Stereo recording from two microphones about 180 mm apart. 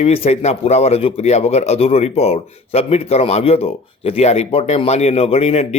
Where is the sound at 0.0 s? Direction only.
35° left (ahead or behind).